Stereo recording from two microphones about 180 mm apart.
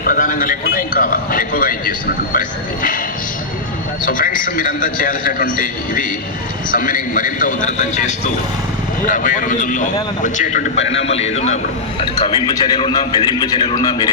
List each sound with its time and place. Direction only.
0.2 s a man's voice: 50° left (ahead or behind)
4.0 s a man's voice: 50° left (ahead or behind)
12.5 s a man's voice: 25° left (ahead or behind)